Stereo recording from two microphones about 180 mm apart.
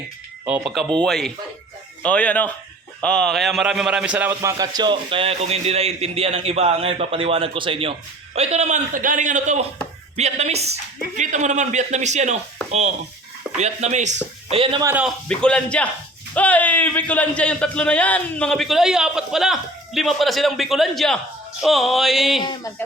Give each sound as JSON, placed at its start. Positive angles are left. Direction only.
{"t": 0.4, "sound": "a man's voice", "side_deg": -5}
{"t": 14.5, "sound": "a man's voice", "side_deg": -30}
{"t": 14.8, "sound": "a man's voice", "side_deg": -5}
{"t": 15.3, "sound": "a man's voice", "side_deg": 5}
{"t": 22.4, "sound": "speech", "side_deg": 25}